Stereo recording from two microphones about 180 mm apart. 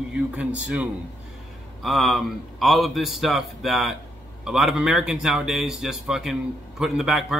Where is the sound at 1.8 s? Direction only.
Centre (ahead or behind).